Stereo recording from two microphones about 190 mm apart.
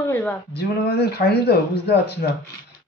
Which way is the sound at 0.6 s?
55° left (ahead or behind).